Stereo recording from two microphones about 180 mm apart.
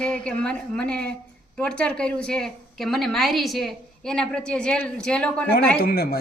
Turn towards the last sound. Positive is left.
turn(degrees=55)  # may be behind; listen again after turning